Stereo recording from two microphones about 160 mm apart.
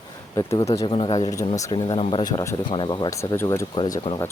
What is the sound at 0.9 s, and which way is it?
Speech, 30° left (ahead or behind).